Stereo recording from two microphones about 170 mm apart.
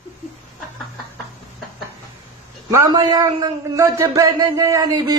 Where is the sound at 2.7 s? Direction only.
20° right (ahead or behind).